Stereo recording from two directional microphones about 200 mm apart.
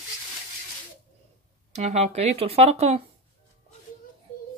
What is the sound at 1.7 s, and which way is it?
Speech, 35° right (ahead or behind).